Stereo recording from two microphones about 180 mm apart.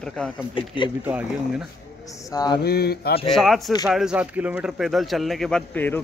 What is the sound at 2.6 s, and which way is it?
Speech, 60° left (ahead or behind).